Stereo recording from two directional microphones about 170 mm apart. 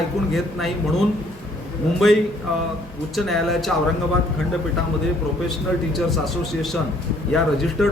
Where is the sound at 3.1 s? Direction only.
Centre (ahead or behind).